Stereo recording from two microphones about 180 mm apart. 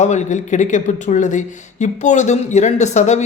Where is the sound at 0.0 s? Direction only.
40° left (ahead or behind).